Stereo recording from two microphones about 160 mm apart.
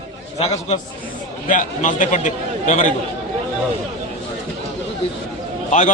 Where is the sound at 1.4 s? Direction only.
50° left (ahead or behind).